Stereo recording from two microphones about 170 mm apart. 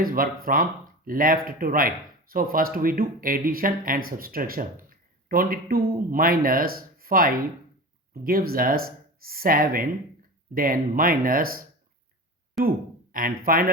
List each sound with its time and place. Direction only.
0.0 s speech: 55° right (ahead or behind)